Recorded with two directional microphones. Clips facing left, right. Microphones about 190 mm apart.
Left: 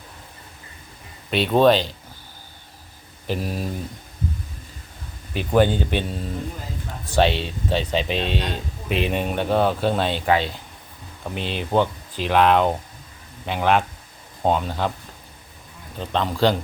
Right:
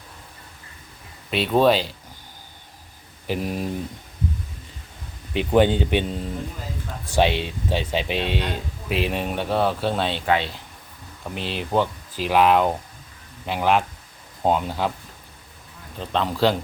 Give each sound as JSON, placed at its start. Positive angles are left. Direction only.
{"t": 1.3, "sound": "speech", "side_deg": 0}
{"t": 3.2, "sound": "speech", "side_deg": -20}
{"t": 5.3, "sound": "speech", "side_deg": -20}
{"t": 16.0, "sound": "speech", "side_deg": 0}